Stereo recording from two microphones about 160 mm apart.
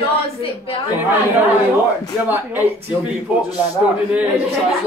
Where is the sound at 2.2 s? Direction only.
10° right (ahead or behind).